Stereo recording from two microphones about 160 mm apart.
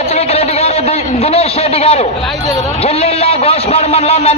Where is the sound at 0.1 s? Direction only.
40° left (ahead or behind).